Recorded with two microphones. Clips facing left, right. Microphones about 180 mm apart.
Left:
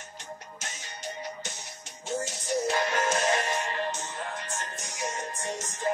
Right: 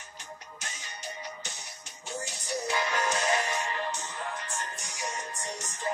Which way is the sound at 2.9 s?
45° left (ahead or behind).